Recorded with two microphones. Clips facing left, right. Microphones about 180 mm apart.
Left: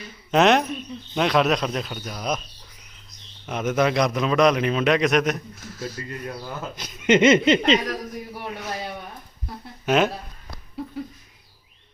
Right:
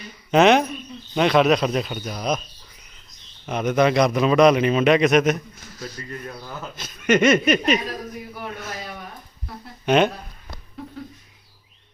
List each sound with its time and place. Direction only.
0.3 s a man's voice: centre (ahead or behind)
3.4 s a man's voice: centre (ahead or behind)
6.7 s a sound: 20° left (ahead or behind)
9.8 s speech: 5° left (ahead or behind)